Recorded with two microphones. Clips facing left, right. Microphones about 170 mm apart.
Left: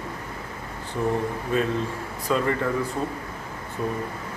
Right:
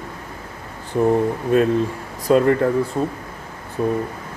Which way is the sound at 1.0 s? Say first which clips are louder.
Right 8 dB; 45° right (ahead or behind).